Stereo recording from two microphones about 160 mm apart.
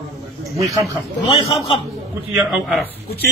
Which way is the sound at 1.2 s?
35° left (ahead or behind).